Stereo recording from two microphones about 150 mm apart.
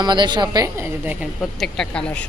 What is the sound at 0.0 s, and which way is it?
A woman's voice, 30° right (ahead or behind).